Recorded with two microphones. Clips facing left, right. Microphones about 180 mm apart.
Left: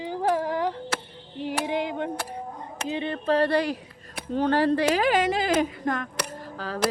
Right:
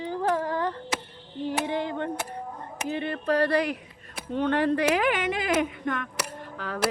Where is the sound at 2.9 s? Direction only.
20° left (ahead or behind).